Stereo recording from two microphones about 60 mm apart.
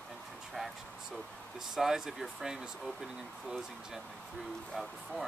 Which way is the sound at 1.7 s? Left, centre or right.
Centre.